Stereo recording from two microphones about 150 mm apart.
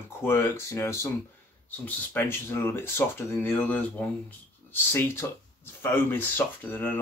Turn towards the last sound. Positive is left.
turn(degrees=10)  # may be behind; listen again after turning